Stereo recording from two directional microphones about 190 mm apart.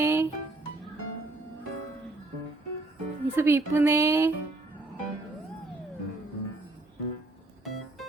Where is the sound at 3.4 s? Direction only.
10° right (ahead or behind).